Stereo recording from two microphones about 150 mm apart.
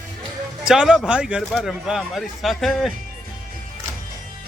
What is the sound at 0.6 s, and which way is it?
A man's voice, 5° right (ahead or behind).